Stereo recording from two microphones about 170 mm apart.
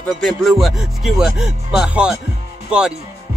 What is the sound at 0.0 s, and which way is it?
Speech, centre (ahead or behind).